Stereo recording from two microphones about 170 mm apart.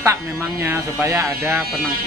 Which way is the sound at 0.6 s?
15° right (ahead or behind).